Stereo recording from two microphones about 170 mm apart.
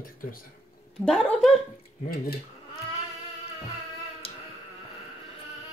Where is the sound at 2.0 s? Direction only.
60° left (ahead or behind).